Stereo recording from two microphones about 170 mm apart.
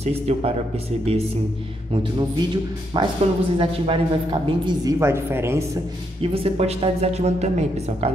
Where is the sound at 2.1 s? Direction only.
25° right (ahead or behind).